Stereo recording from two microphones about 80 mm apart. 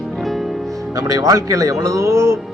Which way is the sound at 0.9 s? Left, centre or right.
Right.